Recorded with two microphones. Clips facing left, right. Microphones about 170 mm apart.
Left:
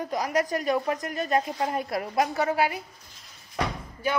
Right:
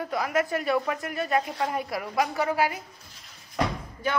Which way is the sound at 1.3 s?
25° left (ahead or behind).